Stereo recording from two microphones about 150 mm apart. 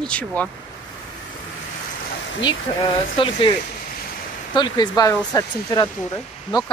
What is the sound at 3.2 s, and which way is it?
Speech, 35° left (ahead or behind).